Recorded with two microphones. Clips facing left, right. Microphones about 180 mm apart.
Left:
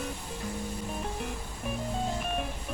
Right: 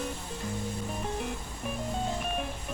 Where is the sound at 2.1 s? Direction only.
Centre (ahead or behind).